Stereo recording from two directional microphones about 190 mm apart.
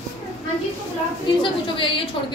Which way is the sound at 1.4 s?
25° left (ahead or behind).